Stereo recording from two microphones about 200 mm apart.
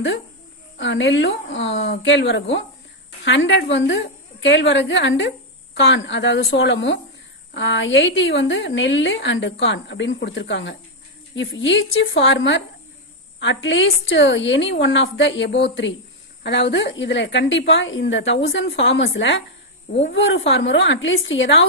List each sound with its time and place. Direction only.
0.7 s a woman's voice: 65° left (ahead or behind)